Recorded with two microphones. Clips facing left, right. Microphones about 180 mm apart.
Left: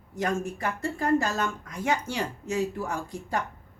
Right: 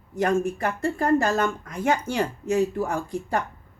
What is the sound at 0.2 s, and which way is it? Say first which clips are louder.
Speech: right 6 dB; 55° right (ahead or behind).